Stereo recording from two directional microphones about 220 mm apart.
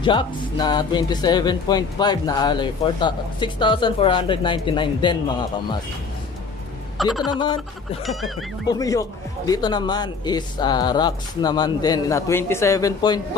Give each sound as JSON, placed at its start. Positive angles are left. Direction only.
{"t": 0.0, "sound": "speech", "side_deg": 20}
{"t": 7.0, "sound": "speech", "side_deg": 0}
{"t": 7.2, "sound": "speech", "side_deg": 20}
{"t": 8.0, "sound": "speech", "side_deg": 0}
{"t": 8.6, "sound": "speech", "side_deg": 15}